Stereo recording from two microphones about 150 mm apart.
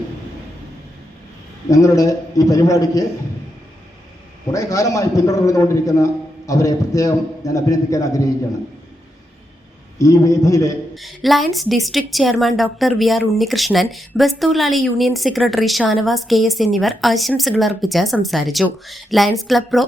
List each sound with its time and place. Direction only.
1.7 s a man's voice: 20° left (ahead or behind)
4.5 s a man's voice: 20° left (ahead or behind)
10.0 s a man's voice: 20° left (ahead or behind)
10.9 s a woman's voice: centre (ahead or behind)